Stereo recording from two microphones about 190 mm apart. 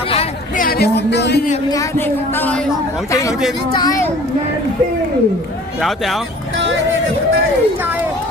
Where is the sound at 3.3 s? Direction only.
Centre (ahead or behind).